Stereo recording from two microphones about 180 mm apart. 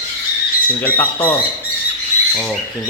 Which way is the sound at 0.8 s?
10° left (ahead or behind).